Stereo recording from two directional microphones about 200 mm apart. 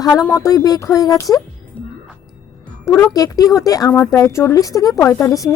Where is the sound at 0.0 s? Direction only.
20° left (ahead or behind).